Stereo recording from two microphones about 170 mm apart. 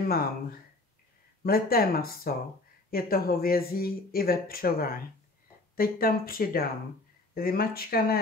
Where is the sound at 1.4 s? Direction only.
60° left (ahead or behind).